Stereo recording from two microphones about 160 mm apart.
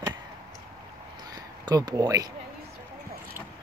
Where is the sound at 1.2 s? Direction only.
25° right (ahead or behind).